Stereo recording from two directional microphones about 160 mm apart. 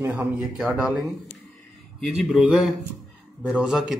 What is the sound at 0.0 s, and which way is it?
A man's voice, 10° right (ahead or behind).